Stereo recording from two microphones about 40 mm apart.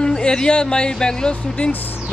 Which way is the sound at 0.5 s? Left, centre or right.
Left.